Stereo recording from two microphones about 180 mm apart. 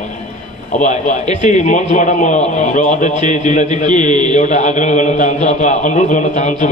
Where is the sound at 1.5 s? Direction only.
40° left (ahead or behind).